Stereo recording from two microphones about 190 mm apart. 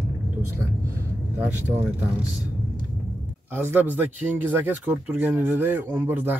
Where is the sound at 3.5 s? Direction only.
10° right (ahead or behind).